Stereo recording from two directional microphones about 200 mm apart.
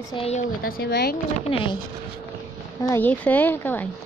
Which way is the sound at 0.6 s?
45° left (ahead or behind).